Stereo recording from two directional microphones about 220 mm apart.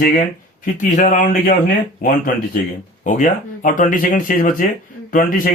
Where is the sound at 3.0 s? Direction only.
35° left (ahead or behind).